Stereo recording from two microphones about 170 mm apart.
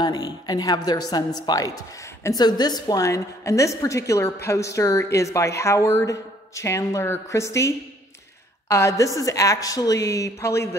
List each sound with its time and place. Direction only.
0.0 s a woman's voice: 25° left (ahead or behind)